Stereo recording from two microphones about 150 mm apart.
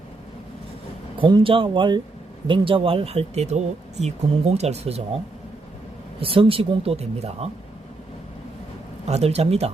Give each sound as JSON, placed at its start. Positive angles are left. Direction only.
{"t": 1.2, "sound": "speech", "side_deg": -35}
{"t": 6.1, "sound": "speech", "side_deg": -35}
{"t": 9.0, "sound": "speech", "side_deg": -45}